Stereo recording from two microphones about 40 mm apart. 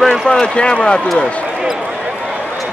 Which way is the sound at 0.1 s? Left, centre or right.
Centre.